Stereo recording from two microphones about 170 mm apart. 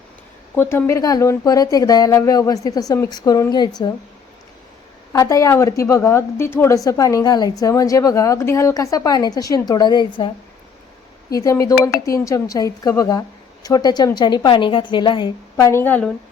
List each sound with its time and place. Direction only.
0.5 s a woman's voice: 15° left (ahead or behind)
5.1 s a woman's voice: 20° left (ahead or behind)